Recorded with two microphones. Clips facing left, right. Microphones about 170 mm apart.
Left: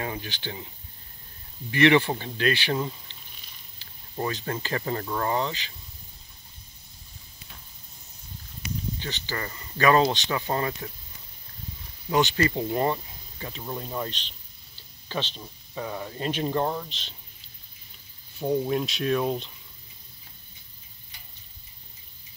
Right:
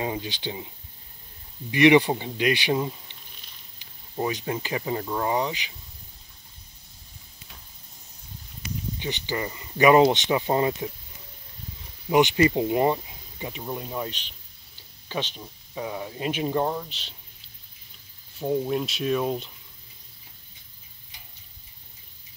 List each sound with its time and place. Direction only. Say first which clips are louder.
0.0 s speech: right 4 dB; 20° right (ahead or behind)
1.7 s speech: right 3 dB; 15° right (ahead or behind)
9.0 s speech: right 4 dB; 15° right (ahead or behind)
12.1 s speech: right 4 dB; 20° right (ahead or behind)
18.4 s speech: even; centre (ahead or behind)